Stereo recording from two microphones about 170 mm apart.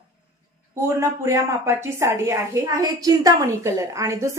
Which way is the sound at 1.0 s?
15° right (ahead or behind).